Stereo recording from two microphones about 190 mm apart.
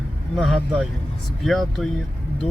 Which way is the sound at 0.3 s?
Centre (ahead or behind).